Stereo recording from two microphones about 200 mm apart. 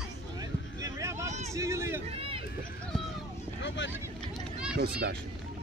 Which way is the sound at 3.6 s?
65° left (ahead or behind).